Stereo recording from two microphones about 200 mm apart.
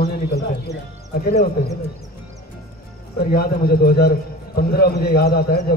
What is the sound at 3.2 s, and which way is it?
Speech, 50° left (ahead or behind).